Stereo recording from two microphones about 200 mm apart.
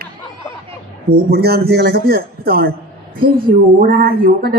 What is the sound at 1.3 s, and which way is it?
Speech, 50° right (ahead or behind).